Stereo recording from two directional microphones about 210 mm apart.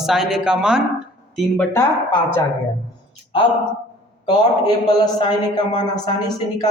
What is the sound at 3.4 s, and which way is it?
A man's voice, 25° left (ahead or behind).